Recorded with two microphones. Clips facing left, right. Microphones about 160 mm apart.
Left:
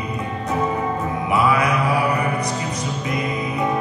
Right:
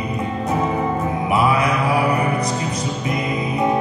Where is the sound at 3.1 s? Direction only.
25° right (ahead or behind).